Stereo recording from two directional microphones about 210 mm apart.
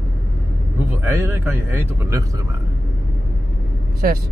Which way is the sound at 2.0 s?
15° right (ahead or behind).